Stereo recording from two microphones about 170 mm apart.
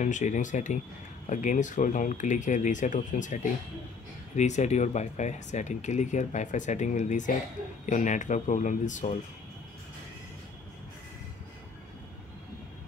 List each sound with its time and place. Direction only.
0.0 s speech: 45° left (ahead or behind)